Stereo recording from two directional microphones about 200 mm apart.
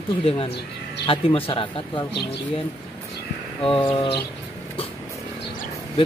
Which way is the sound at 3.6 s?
25° left (ahead or behind).